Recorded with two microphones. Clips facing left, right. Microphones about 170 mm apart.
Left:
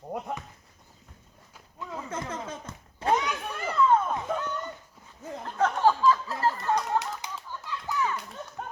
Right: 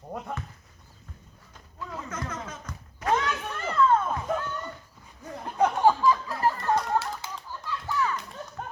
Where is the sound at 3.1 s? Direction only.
15° left (ahead or behind).